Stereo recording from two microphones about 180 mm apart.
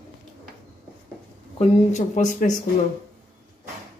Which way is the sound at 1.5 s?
40° left (ahead or behind).